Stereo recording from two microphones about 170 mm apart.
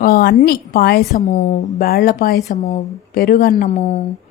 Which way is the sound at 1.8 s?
60° left (ahead or behind).